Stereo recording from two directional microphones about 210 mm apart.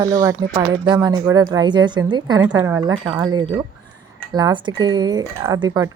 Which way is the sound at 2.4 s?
10° right (ahead or behind).